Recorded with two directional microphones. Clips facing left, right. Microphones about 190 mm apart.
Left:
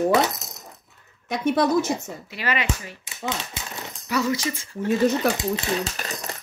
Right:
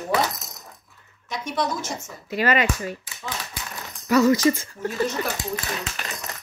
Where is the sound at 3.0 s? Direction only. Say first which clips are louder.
Left 4 dB; 20° left (ahead or behind).